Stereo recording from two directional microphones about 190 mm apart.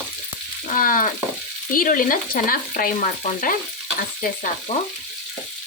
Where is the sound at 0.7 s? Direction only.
45° left (ahead or behind).